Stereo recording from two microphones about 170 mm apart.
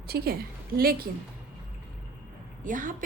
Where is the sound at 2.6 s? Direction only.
50° right (ahead or behind).